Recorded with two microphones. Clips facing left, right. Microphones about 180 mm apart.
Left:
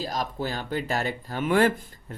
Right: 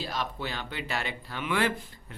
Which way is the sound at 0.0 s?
40° left (ahead or behind).